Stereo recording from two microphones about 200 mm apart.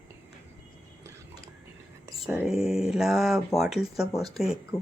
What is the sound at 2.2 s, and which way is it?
Speech, 5° right (ahead or behind).